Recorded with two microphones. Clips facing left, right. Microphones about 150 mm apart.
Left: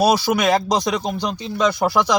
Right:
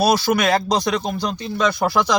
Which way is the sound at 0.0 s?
15° left (ahead or behind).